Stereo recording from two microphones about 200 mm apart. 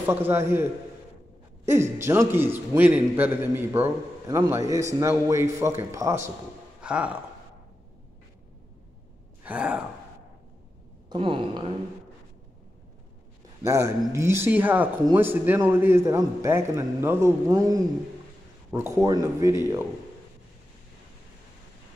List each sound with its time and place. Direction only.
0.0 s a man's voice: 10° right (ahead or behind)
1.7 s a man's voice: 15° right (ahead or behind)
9.4 s sigh: 5° right (ahead or behind)
11.1 s a woman's voice: 25° right (ahead or behind)
13.6 s a man's voice: 15° right (ahead or behind)